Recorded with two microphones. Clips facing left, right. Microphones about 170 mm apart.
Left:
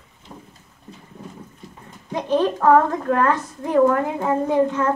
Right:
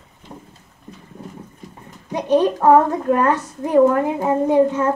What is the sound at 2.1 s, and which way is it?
A child's voice, 15° right (ahead or behind).